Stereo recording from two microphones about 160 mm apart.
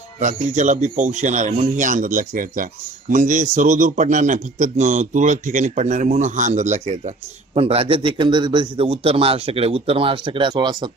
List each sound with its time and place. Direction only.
0.2 s a man's voice: 50° right (ahead or behind); by 10.9 s 25° right (ahead or behind)